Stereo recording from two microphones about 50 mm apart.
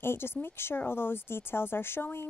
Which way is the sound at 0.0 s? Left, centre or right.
Left.